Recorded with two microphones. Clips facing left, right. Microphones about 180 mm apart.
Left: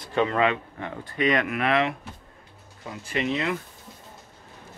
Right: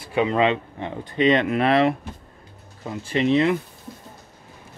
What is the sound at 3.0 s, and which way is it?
Speech, 30° right (ahead or behind).